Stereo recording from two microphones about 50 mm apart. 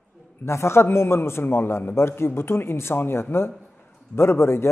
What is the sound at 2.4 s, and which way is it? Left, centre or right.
A man's voice, left.